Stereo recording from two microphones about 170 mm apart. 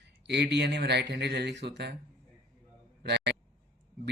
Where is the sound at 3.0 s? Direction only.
80° right.